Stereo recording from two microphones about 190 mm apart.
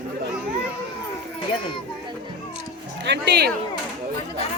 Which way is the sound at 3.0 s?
65° right (ahead or behind).